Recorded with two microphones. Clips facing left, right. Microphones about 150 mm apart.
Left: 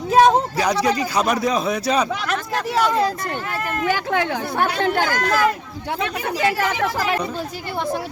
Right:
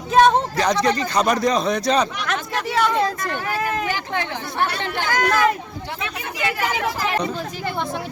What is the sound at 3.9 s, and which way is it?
Speech, 55° left (ahead or behind).